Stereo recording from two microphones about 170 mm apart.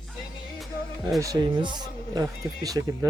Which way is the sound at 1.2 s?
20° right (ahead or behind).